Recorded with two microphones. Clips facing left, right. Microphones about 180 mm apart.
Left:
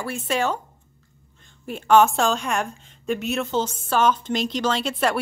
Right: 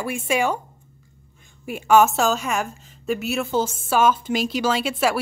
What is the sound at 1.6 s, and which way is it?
A woman's voice, 10° right (ahead or behind).